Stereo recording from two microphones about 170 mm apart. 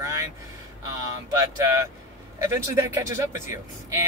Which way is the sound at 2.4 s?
15° right (ahead or behind).